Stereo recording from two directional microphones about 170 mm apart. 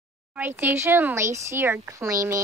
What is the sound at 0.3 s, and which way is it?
Speech, 10° right (ahead or behind).